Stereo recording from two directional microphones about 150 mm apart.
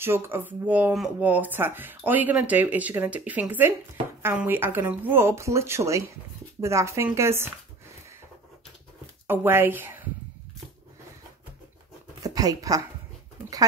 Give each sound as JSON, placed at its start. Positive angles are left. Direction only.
{"t": 0.0, "sound": "speech", "side_deg": -15}
{"t": 9.3, "sound": "speech", "side_deg": -15}
{"t": 12.2, "sound": "speech", "side_deg": -25}